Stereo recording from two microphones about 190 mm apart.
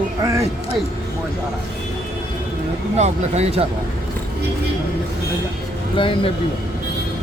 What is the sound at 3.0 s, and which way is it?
Speech, 35° right (ahead or behind).